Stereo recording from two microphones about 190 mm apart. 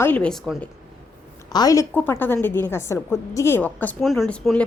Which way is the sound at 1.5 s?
20° left (ahead or behind).